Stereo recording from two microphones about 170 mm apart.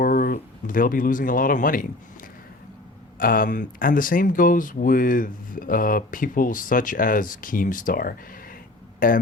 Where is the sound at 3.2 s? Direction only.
55° left (ahead or behind).